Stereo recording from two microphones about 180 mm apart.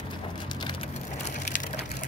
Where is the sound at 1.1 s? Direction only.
45° left (ahead or behind).